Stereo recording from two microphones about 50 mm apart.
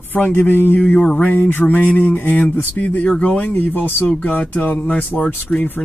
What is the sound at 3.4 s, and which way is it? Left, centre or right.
Speech, left.